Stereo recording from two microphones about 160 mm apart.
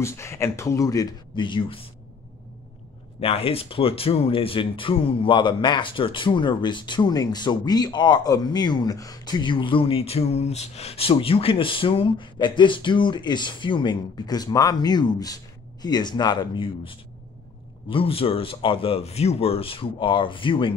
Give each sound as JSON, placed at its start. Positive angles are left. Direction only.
{"t": 0.0, "sound": "speech", "side_deg": 15}
{"t": 3.2, "sound": "speech", "side_deg": 35}